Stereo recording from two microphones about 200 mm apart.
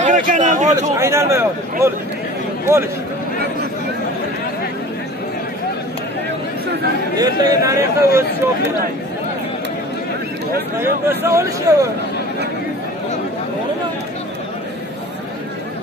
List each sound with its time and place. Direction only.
0.0 s speech: 40° right (ahead or behind)
0.9 s speech: 15° right (ahead or behind)
7.2 s speech: 15° right (ahead or behind)
10.8 s speech: 15° right (ahead or behind)